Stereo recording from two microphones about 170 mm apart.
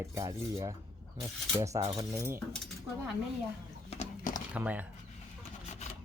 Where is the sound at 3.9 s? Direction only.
45° left (ahead or behind).